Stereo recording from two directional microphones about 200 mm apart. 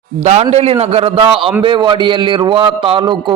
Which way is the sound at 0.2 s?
35° right (ahead or behind).